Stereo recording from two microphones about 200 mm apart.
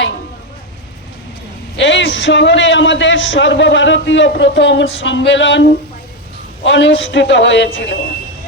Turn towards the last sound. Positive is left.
turn(degrees=65)  # may be behind; listen again after turning